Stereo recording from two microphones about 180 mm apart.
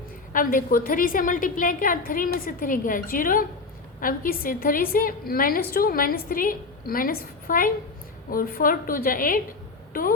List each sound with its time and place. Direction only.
0.3 s a woman's voice: 50° left (ahead or behind)